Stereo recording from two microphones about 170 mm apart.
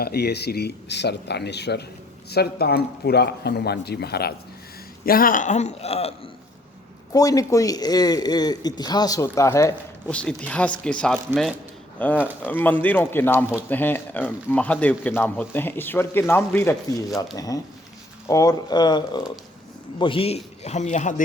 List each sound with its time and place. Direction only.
0.0 s speech: 70° left (ahead or behind)
2.3 s speech: 70° left (ahead or behind)
5.0 s speech: 60° left (ahead or behind); by 6.1 s 35° left (ahead or behind)
7.1 s a man's voice: 20° left (ahead or behind)
10.1 s a man's voice: 5° left (ahead or behind); by 21.2 s 45° left (ahead or behind)